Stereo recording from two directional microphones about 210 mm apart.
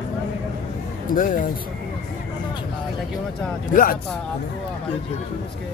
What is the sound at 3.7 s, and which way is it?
Speech, 40° left (ahead or behind).